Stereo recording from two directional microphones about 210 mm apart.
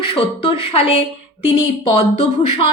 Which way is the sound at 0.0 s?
25° left (ahead or behind).